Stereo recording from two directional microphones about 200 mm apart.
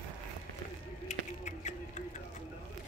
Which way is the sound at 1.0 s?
35° left (ahead or behind).